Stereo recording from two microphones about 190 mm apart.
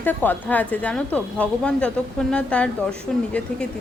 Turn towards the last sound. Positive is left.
turn(degrees=5)  # may be behind; listen again after turning